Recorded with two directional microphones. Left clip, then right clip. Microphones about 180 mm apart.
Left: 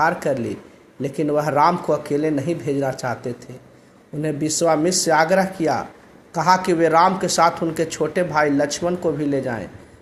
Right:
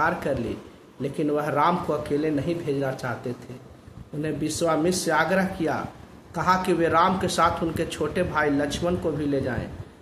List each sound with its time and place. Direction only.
0.0 s speech: 25° left (ahead or behind)
4.2 s speech: 25° left (ahead or behind)